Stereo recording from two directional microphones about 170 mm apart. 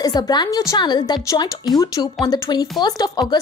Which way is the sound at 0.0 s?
20° left (ahead or behind).